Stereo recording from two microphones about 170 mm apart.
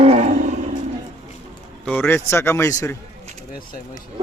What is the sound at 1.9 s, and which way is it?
A man's voice, 10° left (ahead or behind).